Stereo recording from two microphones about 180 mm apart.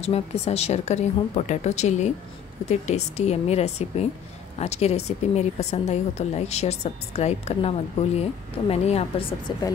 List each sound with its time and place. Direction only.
0.0 s a woman's voice: 35° left (ahead or behind)